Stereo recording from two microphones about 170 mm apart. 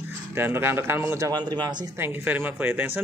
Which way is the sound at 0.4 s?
15° right (ahead or behind).